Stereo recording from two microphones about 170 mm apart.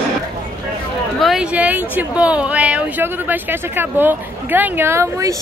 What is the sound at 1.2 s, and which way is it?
Speech, centre (ahead or behind).